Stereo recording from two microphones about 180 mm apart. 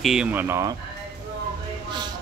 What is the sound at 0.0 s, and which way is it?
Speech, 5° right (ahead or behind).